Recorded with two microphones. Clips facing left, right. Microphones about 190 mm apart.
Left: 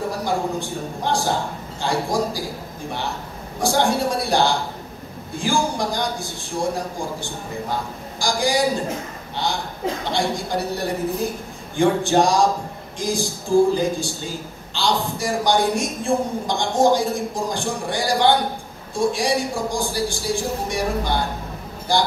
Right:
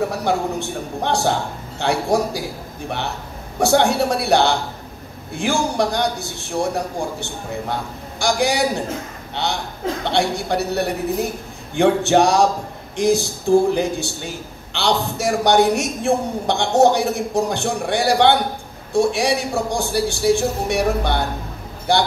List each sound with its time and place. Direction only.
0.2 s a man's voice: 70° right (ahead or behind)
3.5 s a man's voice: 70° right (ahead or behind)